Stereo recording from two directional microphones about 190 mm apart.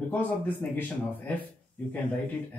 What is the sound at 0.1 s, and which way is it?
Speech, 10° left (ahead or behind).